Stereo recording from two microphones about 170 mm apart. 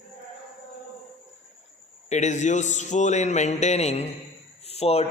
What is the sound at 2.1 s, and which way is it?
A man's voice, 45° left (ahead or behind).